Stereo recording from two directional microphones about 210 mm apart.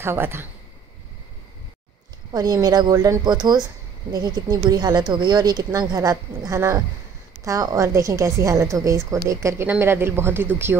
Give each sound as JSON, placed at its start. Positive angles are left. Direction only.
{"t": 0.0, "sound": "a woman's voice", "side_deg": -10}
{"t": 2.3, "sound": "a woman's voice", "side_deg": -20}